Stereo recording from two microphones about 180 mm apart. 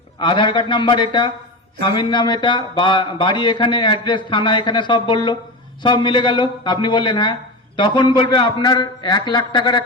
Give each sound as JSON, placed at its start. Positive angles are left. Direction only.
{"t": 0.2, "sound": "speech", "side_deg": 25}